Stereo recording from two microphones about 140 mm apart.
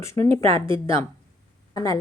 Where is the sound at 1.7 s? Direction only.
25° left (ahead or behind).